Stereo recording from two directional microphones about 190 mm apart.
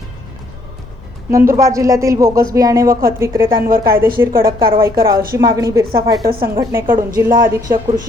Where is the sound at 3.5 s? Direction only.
50° right (ahead or behind).